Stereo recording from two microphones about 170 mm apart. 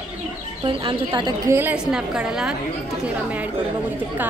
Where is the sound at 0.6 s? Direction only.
30° right (ahead or behind).